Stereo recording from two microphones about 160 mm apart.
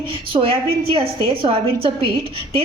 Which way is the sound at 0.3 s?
35° right (ahead or behind).